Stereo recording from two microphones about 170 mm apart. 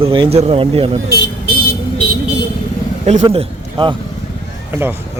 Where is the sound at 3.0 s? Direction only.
45° right (ahead or behind).